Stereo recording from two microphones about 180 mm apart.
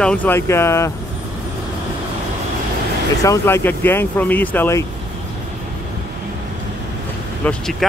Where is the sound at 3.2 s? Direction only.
15° left (ahead or behind).